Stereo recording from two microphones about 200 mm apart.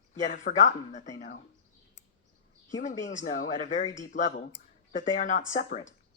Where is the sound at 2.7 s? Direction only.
40° left (ahead or behind).